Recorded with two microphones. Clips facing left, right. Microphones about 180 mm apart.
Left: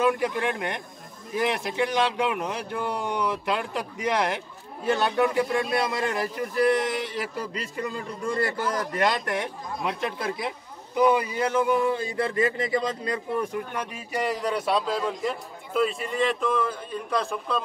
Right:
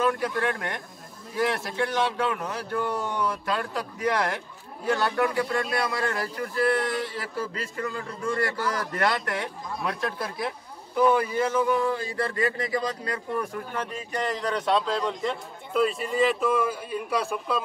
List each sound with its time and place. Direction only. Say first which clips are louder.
0.0 s a man's voice: left 1 dB; 20° left (ahead or behind); by 17.6 s 5° right (ahead or behind)